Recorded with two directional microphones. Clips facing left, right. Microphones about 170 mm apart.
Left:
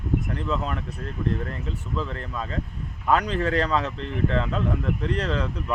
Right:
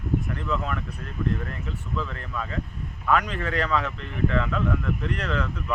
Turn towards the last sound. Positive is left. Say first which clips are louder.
# left 1 dB
turn(degrees=30)  # may be behind; listen again after turning